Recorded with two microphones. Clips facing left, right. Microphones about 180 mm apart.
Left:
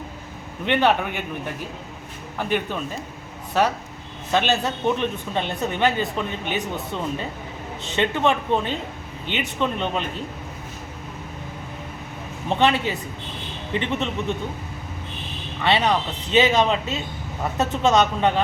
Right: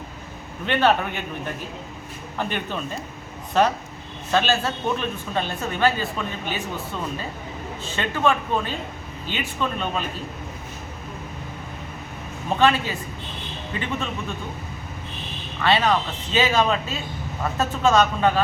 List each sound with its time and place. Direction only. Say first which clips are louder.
0.6 s a man's voice: even; 15° left (ahead or behind)
2.4 s a man's voice: left 3 dB; 10° left (ahead or behind)
4.3 s speech: even; 20° left (ahead or behind)
12.5 s speech: even; 20° left (ahead or behind)
15.6 s speech: even; 20° left (ahead or behind)